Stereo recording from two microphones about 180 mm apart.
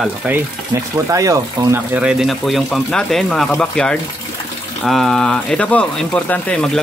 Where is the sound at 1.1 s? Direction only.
15° right (ahead or behind).